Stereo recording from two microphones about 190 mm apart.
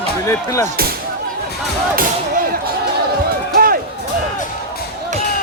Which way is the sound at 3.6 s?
50° right (ahead or behind).